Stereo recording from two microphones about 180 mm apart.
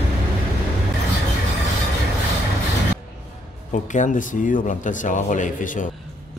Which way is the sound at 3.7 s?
45° left (ahead or behind).